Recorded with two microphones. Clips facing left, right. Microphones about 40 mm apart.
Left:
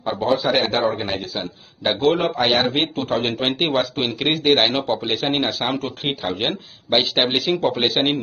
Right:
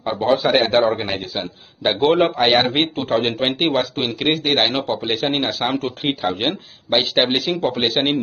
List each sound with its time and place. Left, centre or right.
0.0 s a man's voice: right
0.6 s a man's voice: right
2.7 s speech: centre